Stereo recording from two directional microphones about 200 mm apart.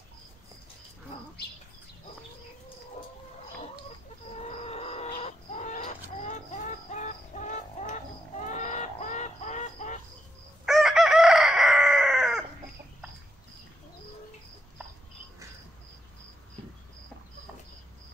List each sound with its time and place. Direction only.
4.5 s a sound: 30° left (ahead or behind)
8.5 s music: 35° left (ahead or behind)
10.6 s chicken: centre (ahead or behind)